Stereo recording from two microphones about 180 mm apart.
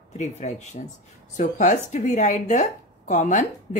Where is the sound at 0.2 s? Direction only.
40° left (ahead or behind).